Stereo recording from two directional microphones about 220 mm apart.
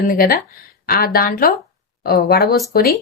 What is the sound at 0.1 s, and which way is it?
A woman's voice, 40° left (ahead or behind).